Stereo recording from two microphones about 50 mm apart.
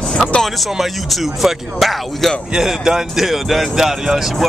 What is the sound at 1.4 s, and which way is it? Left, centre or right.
Speech, centre.